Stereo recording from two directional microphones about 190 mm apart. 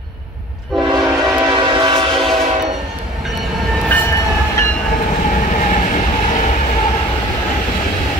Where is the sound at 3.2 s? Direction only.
Centre (ahead or behind).